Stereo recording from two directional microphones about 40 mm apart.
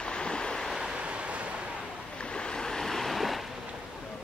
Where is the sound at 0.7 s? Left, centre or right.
Centre.